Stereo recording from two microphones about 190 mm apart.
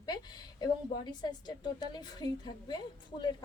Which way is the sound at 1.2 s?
20° left (ahead or behind).